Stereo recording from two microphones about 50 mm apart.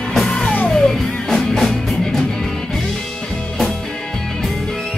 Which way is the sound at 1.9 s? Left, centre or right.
Centre.